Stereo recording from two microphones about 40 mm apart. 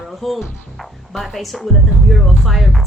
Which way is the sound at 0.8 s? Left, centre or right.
Centre.